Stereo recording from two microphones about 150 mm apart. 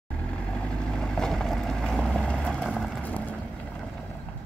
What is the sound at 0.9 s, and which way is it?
Vehicle, 5° left (ahead or behind).